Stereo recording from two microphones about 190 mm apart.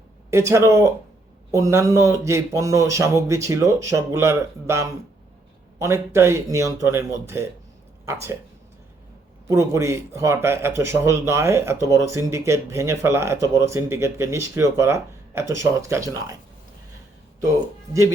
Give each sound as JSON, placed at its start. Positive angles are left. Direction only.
{"t": 0.3, "sound": "speech", "side_deg": -15}
{"t": 9.5, "sound": "speech", "side_deg": -15}